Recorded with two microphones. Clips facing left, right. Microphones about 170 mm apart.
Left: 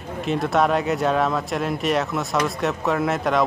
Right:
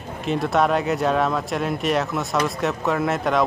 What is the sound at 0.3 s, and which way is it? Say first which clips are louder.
Speech: even; centre (ahead or behind).